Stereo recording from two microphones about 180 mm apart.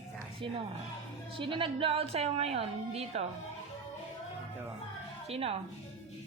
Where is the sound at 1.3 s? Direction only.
30° right (ahead or behind).